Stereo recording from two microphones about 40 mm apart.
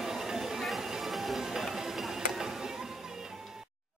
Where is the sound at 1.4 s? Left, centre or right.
Centre.